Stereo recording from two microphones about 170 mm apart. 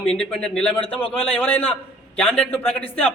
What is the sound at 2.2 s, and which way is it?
Speech, 10° left (ahead or behind).